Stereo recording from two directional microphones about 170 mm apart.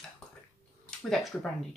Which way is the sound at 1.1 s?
Centre (ahead or behind).